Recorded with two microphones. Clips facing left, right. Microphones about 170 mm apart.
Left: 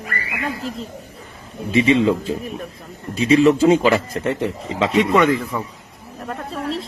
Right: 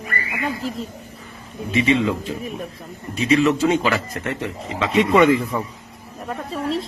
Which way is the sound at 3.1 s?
30° left (ahead or behind).